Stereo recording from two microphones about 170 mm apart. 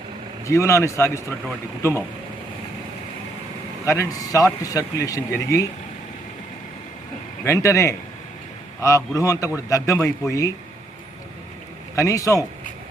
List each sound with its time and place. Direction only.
0.4 s speech: 15° left (ahead or behind)
3.8 s a man's voice: 20° left (ahead or behind)
7.4 s a man's voice: 15° left (ahead or behind)
11.9 s a man's voice: 20° left (ahead or behind)